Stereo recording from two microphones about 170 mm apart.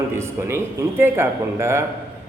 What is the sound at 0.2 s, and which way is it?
A man's voice, 15° right (ahead or behind).